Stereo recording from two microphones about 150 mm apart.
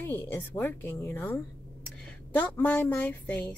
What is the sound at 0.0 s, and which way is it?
A woman's voice, 15° left (ahead or behind).